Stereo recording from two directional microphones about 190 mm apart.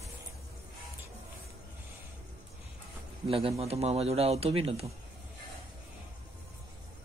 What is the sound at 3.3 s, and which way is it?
A man's voice, 30° right (ahead or behind).